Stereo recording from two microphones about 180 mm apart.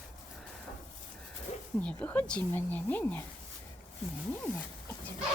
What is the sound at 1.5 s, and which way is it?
Snake, 40° left (ahead or behind).